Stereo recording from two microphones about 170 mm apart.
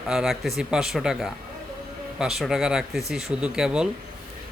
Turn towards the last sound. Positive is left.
turn(degrees=-5)  # may be behind; listen again after turning